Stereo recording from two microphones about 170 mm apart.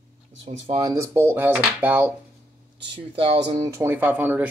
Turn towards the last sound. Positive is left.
turn(degrees=-10)  # may be behind; listen again after turning